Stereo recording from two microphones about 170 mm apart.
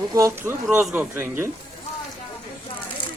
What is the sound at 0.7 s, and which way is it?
Speech, 5° right (ahead or behind).